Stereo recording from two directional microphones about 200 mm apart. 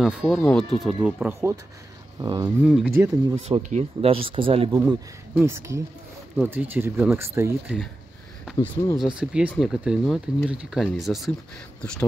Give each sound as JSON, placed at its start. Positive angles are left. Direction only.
{"t": 0.0, "sound": "speech", "side_deg": -5}
{"t": 2.6, "sound": "speech", "side_deg": -10}
{"t": 3.3, "sound": "speech", "side_deg": -30}
{"t": 4.8, "sound": "speech", "side_deg": -10}
{"t": 8.9, "sound": "speech", "side_deg": -5}